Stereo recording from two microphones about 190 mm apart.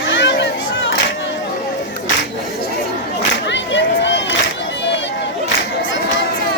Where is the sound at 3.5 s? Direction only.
70° left (ahead or behind).